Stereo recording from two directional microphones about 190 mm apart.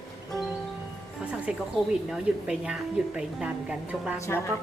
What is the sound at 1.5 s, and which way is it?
A woman's voice, 5° right (ahead or behind).